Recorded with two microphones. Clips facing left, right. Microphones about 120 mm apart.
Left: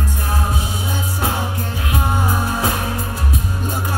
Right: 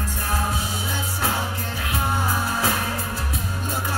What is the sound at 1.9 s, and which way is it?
Music, 20° left (ahead or behind).